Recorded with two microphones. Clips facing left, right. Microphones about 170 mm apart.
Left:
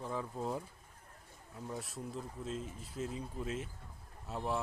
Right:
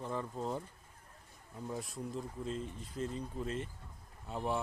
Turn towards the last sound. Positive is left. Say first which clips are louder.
# right 1 dB
turn(degrees=0)  # may be behind; listen again after turning